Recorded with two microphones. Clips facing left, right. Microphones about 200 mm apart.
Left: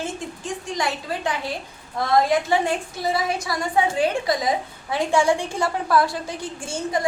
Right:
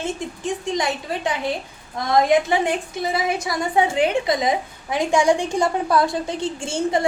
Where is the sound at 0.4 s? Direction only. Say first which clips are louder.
Right 4 dB; 20° right (ahead or behind).